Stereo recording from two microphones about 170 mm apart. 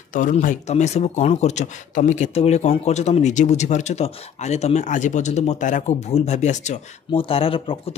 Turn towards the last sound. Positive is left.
turn(degrees=30)  # may be behind; listen again after turning